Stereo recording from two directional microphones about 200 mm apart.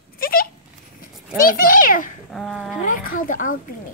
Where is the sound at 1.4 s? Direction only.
45° left (ahead or behind).